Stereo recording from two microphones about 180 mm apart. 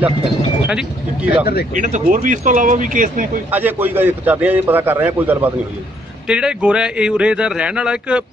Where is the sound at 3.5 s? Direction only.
10° right (ahead or behind).